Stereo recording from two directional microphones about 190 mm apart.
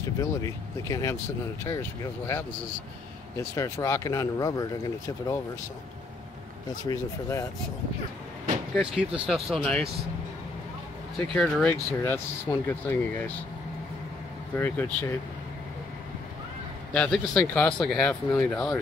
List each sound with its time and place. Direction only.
0.2 s speech: 15° left (ahead or behind)
6.8 s speech: 15° left (ahead or behind)
8.7 s speech: 5° right (ahead or behind)
11.3 s speech: 5° left (ahead or behind)
14.6 s speech: 10° left (ahead or behind)
16.9 s speech: 5° left (ahead or behind)